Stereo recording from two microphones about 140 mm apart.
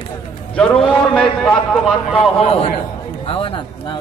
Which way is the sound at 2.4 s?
45° left (ahead or behind).